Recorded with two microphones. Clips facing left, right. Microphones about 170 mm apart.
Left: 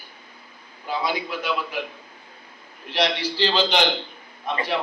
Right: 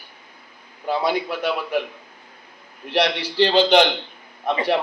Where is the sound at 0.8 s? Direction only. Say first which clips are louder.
Right 5 dB; 60° right (ahead or behind).